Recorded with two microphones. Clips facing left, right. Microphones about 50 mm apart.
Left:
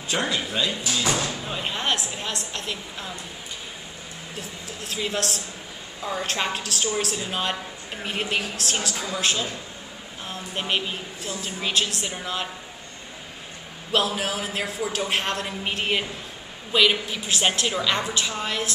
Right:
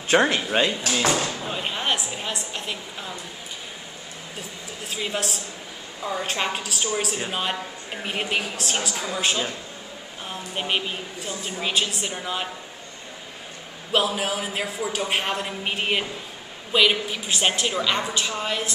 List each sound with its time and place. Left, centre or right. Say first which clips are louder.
0.1 s speech: right 6 dB; right
1.1 s speech: right 1 dB; centre
4.4 s a woman's voice: even; centre
13.9 s a woman's voice: right 1 dB; centre